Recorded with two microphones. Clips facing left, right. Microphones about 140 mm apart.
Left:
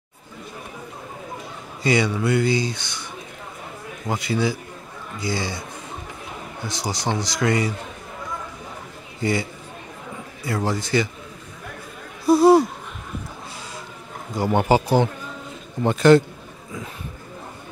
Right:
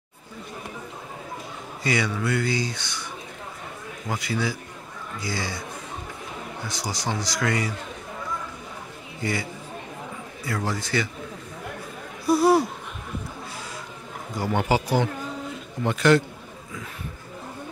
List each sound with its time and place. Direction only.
1.8 s speech: 25° left (ahead or behind)
4.1 s speech: 25° left (ahead or behind)
6.7 s speech: 25° left (ahead or behind)
9.2 s speech: 25° left (ahead or behind)
12.3 s speech: 20° left (ahead or behind)
14.4 s a man's voice: 30° left (ahead or behind)